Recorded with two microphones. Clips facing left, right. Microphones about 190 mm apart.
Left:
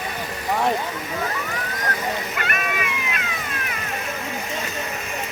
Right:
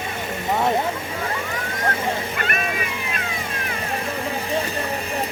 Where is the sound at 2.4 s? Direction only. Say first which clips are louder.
Right 1 dB; 35° right (ahead or behind).